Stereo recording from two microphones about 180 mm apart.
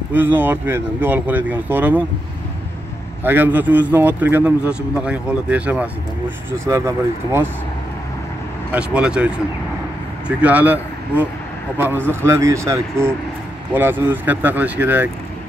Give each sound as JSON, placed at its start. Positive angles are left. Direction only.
{"t": 0.1, "sound": "a man's voice", "side_deg": -10}
{"t": 3.3, "sound": "a man's voice", "side_deg": -10}
{"t": 8.7, "sound": "a man's voice", "side_deg": -5}